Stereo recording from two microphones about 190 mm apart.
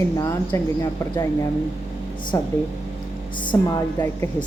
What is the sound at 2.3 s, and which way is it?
Speech, 15° left (ahead or behind).